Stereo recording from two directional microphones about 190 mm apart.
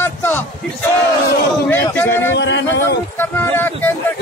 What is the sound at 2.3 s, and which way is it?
Speech, 70° left (ahead or behind).